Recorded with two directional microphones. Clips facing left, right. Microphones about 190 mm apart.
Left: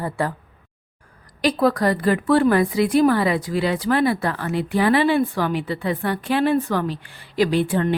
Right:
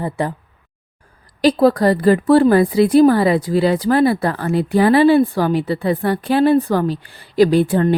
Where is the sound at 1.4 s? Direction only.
30° right (ahead or behind).